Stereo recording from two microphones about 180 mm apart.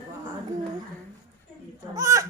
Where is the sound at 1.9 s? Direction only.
20° right (ahead or behind).